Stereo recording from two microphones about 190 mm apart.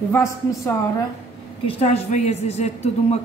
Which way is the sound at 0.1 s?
15° left (ahead or behind).